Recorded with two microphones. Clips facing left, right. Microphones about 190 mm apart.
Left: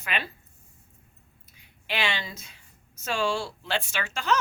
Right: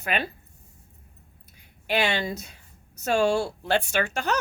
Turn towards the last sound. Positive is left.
turn(degrees=-45)  # may be behind; listen again after turning